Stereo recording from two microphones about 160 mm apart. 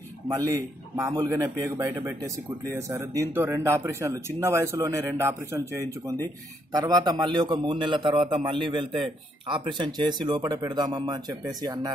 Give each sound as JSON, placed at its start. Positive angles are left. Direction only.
{"t": 0.6, "sound": "speech", "side_deg": -20}